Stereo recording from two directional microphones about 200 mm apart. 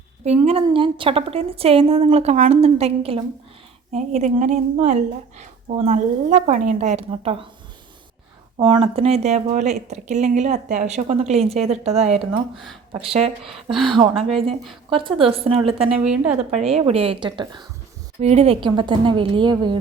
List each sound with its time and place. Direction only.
0.3 s a woman's voice: 30° right (ahead or behind)
8.5 s a woman's voice: 25° right (ahead or behind)
13.4 s speech: centre (ahead or behind)
13.8 s a woman's voice: 25° right (ahead or behind)
18.2 s a woman's voice: 30° right (ahead or behind)